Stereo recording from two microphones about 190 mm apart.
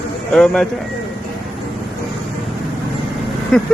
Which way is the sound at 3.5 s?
5° left (ahead or behind).